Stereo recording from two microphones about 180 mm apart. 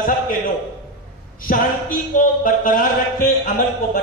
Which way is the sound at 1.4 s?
50° left (ahead or behind).